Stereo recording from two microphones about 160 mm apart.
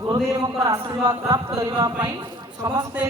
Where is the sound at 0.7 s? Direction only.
25° right (ahead or behind).